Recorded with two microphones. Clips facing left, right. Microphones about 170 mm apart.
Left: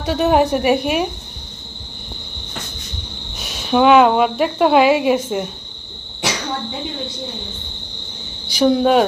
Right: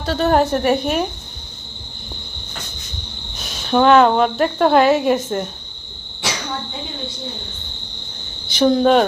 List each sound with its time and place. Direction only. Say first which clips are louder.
0.0 s speech: left 1 dB; 15° left (ahead or behind)
3.3 s speech: even; 5° left (ahead or behind)
8.5 s speech: even; 5° left (ahead or behind)